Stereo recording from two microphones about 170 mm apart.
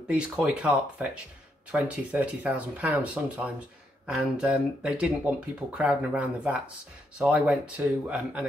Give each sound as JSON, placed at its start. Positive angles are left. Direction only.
{"t": 0.1, "sound": "speech", "side_deg": -5}